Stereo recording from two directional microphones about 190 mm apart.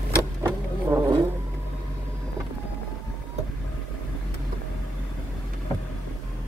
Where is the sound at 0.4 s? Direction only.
20° right (ahead or behind).